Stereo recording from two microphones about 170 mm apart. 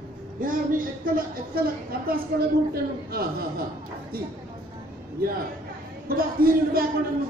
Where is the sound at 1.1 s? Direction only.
60° right (ahead or behind).